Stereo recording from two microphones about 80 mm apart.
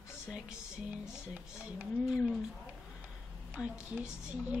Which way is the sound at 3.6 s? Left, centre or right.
Centre.